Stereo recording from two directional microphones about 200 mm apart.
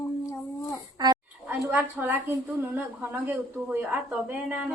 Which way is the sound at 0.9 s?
20° right (ahead or behind).